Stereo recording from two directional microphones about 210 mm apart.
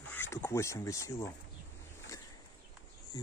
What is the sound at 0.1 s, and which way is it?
Speech, 10° left (ahead or behind).